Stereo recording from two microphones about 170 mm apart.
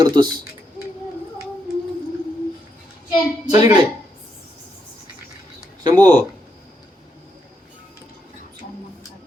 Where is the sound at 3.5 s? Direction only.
20° right (ahead or behind).